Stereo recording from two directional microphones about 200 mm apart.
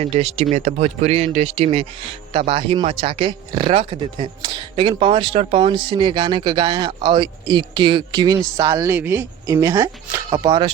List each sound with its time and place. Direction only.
0.0 s speech: 30° right (ahead or behind)